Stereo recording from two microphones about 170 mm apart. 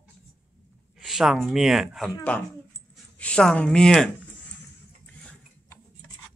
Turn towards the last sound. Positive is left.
turn(degrees=5)  # may be behind; listen again after turning